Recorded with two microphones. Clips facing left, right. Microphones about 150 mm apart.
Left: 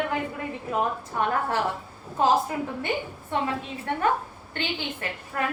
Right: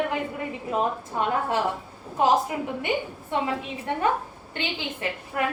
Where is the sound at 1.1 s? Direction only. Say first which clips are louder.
Even; 20° right (ahead or behind).